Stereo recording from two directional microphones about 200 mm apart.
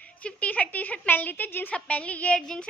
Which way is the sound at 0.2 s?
5° left (ahead or behind).